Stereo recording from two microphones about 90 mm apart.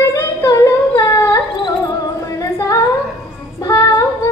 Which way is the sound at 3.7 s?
35° left (ahead or behind).